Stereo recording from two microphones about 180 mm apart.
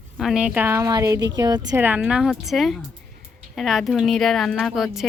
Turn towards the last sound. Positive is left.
turn(degrees=0)  # may be behind; listen again after turning